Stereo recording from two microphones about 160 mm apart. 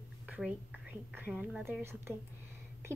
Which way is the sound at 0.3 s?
5° right (ahead or behind).